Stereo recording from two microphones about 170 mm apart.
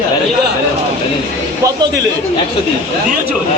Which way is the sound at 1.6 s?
20° right (ahead or behind).